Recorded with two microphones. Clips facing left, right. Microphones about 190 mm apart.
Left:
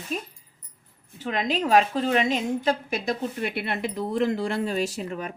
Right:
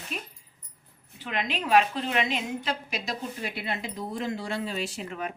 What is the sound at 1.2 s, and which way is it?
A woman's voice, 40° left (ahead or behind).